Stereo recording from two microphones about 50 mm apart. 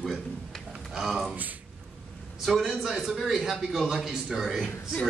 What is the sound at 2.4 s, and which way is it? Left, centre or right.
A man's voice, centre.